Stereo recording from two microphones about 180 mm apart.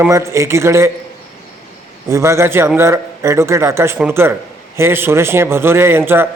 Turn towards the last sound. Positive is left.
turn(degrees=-10)  # may be behind; listen again after turning